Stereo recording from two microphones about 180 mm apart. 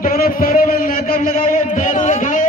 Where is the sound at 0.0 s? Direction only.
55° left (ahead or behind).